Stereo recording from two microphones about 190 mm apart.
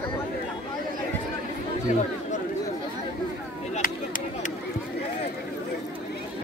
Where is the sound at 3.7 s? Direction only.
45° left (ahead or behind).